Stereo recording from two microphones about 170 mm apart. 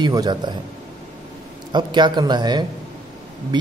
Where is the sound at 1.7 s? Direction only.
25° right (ahead or behind).